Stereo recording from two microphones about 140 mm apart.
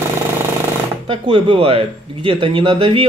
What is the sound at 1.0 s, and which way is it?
Speech, 40° right (ahead or behind).